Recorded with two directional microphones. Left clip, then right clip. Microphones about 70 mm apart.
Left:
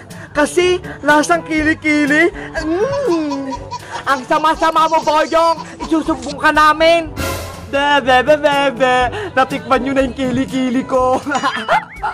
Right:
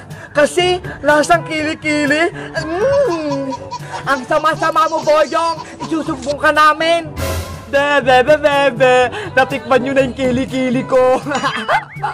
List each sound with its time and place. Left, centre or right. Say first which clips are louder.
0.4 s speech: right 1 dB; left
2.8 s music: right 4 dB; centre
3.9 s speech: even; left
4.8 s speech: left 2 dB; centre
5.1 s speech: left 1 dB; left
7.7 s speech: right 1 dB; left